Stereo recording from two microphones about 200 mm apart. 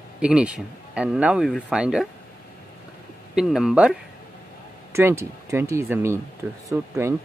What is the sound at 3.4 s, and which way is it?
Speech, centre (ahead or behind).